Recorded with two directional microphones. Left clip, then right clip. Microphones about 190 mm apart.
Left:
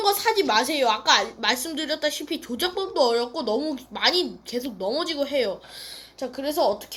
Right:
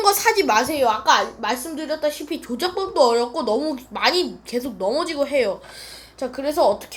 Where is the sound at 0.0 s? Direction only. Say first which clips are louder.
Right 4 dB; centre (ahead or behind).